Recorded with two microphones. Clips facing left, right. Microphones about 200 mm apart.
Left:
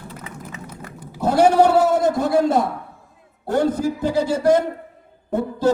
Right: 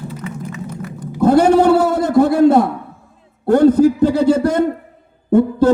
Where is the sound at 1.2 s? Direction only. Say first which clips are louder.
Right 4 dB; 55° right (ahead or behind).